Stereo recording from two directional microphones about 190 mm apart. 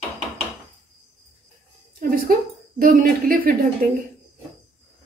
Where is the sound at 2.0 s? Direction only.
50° right (ahead or behind).